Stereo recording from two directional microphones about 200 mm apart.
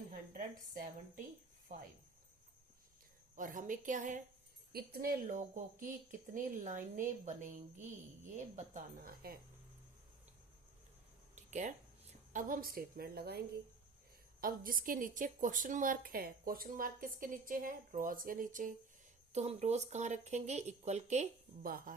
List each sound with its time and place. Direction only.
0.1 s a woman's voice: 45° right (ahead or behind)
3.3 s speech: 40° right (ahead or behind)
4.7 s a woman's voice: 50° right (ahead or behind)
8.4 s a woman's voice: 35° right (ahead or behind)
11.3 s a sound: 35° right (ahead or behind)
12.3 s a woman's voice: 40° right (ahead or behind)